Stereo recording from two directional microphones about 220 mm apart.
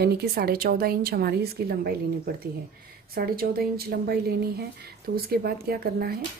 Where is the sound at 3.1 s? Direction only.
40° right (ahead or behind).